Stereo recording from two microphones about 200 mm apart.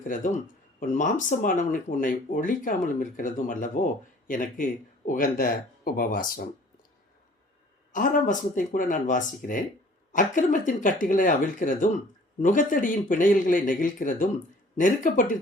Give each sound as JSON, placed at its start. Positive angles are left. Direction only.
{"t": 0.0, "sound": "speech", "side_deg": 40}
{"t": 7.9, "sound": "speech", "side_deg": 40}